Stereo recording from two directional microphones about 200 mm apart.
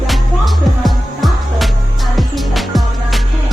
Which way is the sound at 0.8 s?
Centre (ahead or behind).